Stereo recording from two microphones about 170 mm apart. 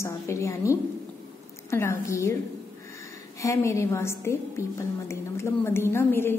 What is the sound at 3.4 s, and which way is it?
A woman's voice, 20° left (ahead or behind).